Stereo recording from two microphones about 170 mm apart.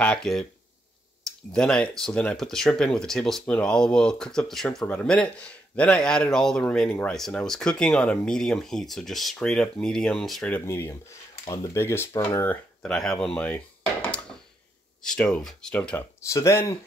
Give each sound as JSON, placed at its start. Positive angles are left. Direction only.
{"t": 0.0, "sound": "speech", "side_deg": 5}
{"t": 1.5, "sound": "speech", "side_deg": 5}
{"t": 12.8, "sound": "speech", "side_deg": 5}
{"t": 15.0, "sound": "speech", "side_deg": 5}